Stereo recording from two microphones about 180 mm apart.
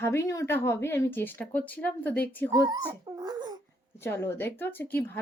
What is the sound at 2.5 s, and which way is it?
Speech, 20° right (ahead or behind).